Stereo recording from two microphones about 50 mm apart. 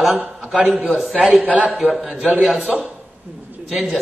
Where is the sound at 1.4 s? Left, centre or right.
Right.